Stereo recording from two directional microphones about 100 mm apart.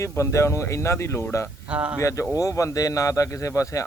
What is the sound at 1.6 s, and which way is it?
Speech, 10° right (ahead or behind).